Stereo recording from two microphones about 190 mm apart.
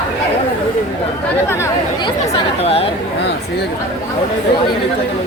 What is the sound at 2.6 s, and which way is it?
Speech, 30° left (ahead or behind).